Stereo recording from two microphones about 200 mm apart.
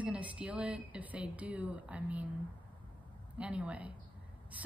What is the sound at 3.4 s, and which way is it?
Speech, 5° right (ahead or behind).